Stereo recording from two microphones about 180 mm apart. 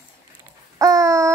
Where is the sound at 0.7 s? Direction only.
15° right (ahead or behind).